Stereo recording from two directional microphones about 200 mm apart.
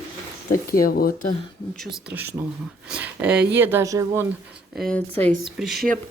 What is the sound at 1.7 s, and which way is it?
Speech, 5° right (ahead or behind).